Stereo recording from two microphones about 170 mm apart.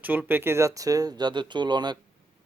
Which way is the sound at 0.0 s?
10° right (ahead or behind).